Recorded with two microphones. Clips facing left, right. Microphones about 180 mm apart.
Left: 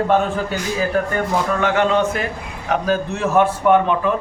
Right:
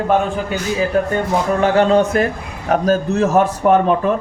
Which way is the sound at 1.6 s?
35° right (ahead or behind).